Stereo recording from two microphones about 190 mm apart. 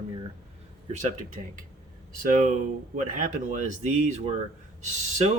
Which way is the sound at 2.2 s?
45° right (ahead or behind).